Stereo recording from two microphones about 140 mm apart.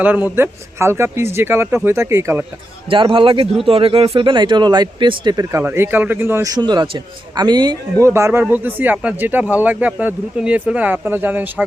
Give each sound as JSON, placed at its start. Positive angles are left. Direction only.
{"t": 0.0, "sound": "speech", "side_deg": -10}
{"t": 2.9, "sound": "speech", "side_deg": -40}
{"t": 8.0, "sound": "speech", "side_deg": -20}